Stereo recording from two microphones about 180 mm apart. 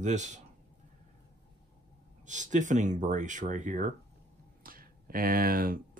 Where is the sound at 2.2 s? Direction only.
45° right (ahead or behind).